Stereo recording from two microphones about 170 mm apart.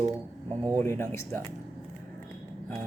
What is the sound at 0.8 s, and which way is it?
Speech, 15° left (ahead or behind).